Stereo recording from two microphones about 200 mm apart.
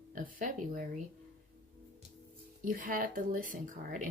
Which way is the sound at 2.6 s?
45° right (ahead or behind).